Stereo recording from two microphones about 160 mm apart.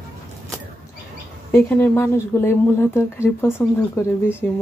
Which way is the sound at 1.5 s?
15° left (ahead or behind).